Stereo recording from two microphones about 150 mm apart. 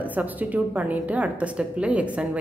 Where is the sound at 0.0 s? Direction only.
10° right (ahead or behind).